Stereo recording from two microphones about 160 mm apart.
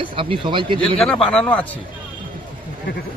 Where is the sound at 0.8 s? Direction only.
5° left (ahead or behind).